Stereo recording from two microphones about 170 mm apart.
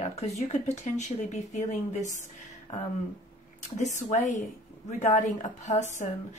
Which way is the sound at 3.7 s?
45° left (ahead or behind).